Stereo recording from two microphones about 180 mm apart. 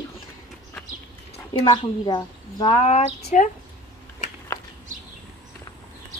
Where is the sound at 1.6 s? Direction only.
20° left (ahead or behind); by 3.5 s 40° left (ahead or behind).